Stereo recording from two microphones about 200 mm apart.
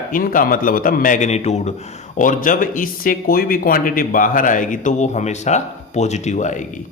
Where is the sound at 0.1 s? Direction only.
45° left (ahead or behind).